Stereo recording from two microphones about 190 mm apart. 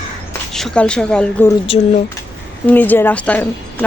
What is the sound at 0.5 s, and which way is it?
Speech, 5° left (ahead or behind).